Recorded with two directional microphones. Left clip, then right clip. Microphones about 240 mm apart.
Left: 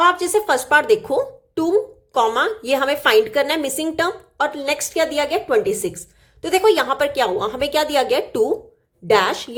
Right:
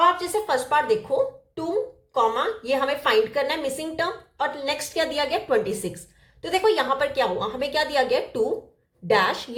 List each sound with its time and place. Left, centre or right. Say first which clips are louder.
0.0 s a woman's voice: left 4 dB; left